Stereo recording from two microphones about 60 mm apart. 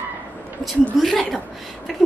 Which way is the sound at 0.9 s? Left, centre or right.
Centre.